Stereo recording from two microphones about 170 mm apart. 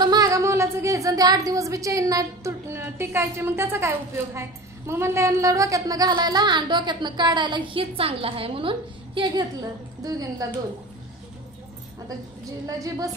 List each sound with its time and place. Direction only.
0.0 s a woman's voice: 20° right (ahead or behind)
12.6 s a woman's voice: 20° right (ahead or behind)